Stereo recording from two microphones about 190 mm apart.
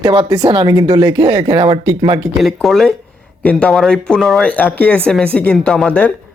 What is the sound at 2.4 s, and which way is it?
Speech, centre (ahead or behind).